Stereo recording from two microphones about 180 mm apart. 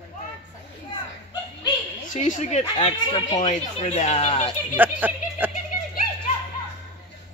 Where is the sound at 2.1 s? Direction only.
40° left (ahead or behind).